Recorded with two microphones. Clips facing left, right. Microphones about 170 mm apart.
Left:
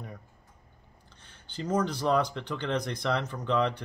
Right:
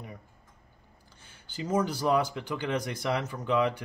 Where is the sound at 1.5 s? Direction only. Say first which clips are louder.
Even; 5° right (ahead or behind).